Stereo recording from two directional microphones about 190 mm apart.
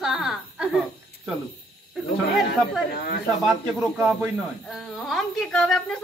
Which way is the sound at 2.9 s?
50° left (ahead or behind).